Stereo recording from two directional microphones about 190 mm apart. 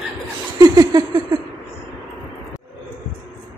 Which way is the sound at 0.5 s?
20° right (ahead or behind).